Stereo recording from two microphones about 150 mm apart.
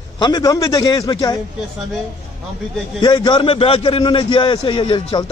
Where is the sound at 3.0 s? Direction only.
30° left (ahead or behind).